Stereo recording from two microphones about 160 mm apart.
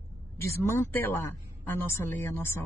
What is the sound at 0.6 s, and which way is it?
Speech, 15° left (ahead or behind).